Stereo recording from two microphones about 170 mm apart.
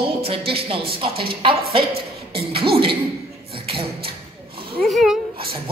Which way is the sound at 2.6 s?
30° right (ahead or behind).